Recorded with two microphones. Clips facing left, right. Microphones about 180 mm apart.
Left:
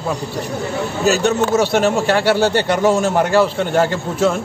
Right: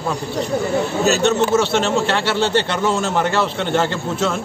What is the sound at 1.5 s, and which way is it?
Speech, 10° left (ahead or behind).